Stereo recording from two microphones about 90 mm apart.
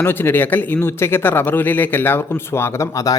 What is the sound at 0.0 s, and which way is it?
A man's voice, 25° left (ahead or behind).